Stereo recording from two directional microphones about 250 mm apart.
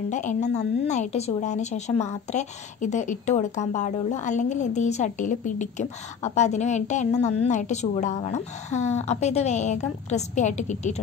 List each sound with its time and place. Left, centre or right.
0.1 s a woman's voice: left